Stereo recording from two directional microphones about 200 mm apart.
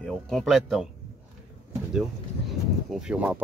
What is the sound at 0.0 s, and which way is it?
Speech, centre (ahead or behind).